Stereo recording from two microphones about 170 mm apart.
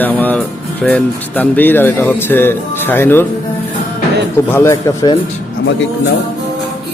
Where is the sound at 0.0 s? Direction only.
10° left (ahead or behind).